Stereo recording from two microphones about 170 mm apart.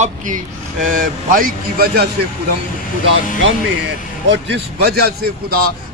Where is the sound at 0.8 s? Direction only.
55° right (ahead or behind).